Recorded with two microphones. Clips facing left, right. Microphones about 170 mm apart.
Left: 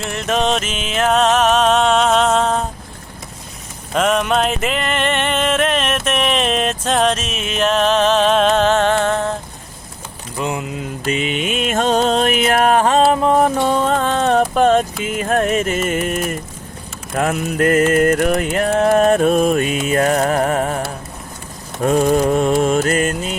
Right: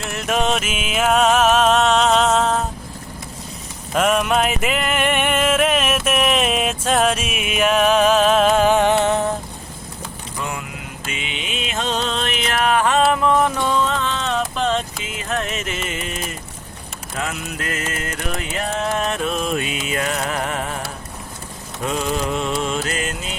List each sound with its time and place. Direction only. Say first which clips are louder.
0.0 s music: left 2 dB; 5° right (ahead or behind)
3.9 s music: left 1 dB; 5° right (ahead or behind)
10.3 s vehicle: left 7 dB; 20° left (ahead or behind)
11.1 s music: left 10 dB; 45° left (ahead or behind)
13.0 s a sound: left 3 dB; 30° left (ahead or behind); by 16.4 s 50° left (ahead or behind)
17.2 s music: left 10 dB; 50° left (ahead or behind)
21.8 s mantra: left 8 dB; 50° left (ahead or behind)